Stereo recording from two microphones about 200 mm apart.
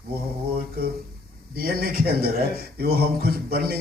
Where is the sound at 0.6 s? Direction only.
50° right (ahead or behind).